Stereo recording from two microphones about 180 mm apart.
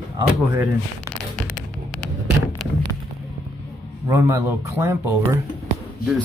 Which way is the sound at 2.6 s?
Centre (ahead or behind).